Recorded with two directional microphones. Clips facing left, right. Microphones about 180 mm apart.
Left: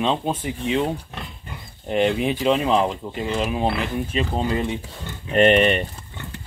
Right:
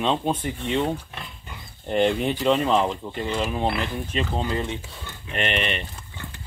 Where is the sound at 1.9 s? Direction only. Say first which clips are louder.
Left 1 dB; 5° left (ahead or behind).